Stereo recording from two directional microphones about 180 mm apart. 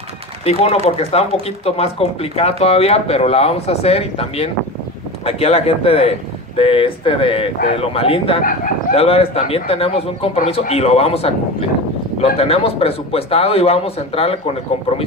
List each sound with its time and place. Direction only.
0.5 s a man's voice: 35° left (ahead or behind)